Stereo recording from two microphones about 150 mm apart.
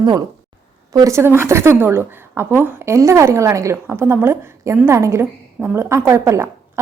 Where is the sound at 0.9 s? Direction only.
20° right (ahead or behind).